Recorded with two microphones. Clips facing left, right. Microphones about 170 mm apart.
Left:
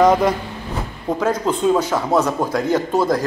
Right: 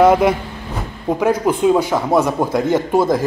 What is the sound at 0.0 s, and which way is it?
Speech, 10° right (ahead or behind).